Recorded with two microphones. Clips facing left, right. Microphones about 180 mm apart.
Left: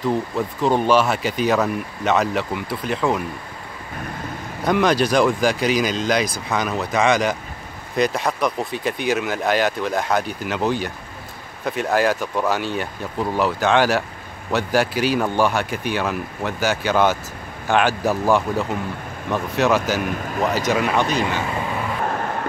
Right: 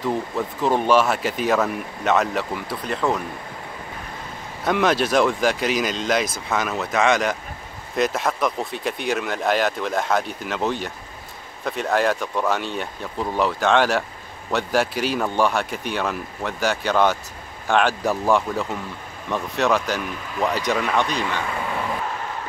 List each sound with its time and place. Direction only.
0.0 s speech: centre (ahead or behind)
4.6 s speech: centre (ahead or behind)
20.0 s speech: 55° left (ahead or behind)
20.4 s speech: centre (ahead or behind)
22.0 s vehicle: 55° left (ahead or behind)